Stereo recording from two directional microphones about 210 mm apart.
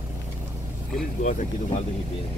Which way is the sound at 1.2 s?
35° left (ahead or behind).